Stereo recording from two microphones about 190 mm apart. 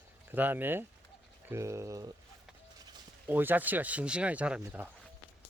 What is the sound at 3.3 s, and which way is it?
Speech, 10° right (ahead or behind).